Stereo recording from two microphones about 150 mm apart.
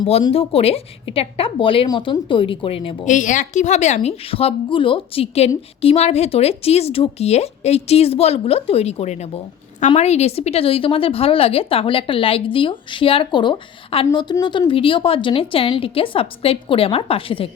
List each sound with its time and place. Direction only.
0.1 s speech: 40° left (ahead or behind)
3.0 s speech: 55° left (ahead or behind); by 17.5 s 35° left (ahead or behind)